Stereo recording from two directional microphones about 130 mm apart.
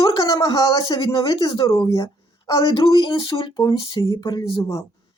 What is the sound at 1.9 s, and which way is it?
Speech, 25° left (ahead or behind).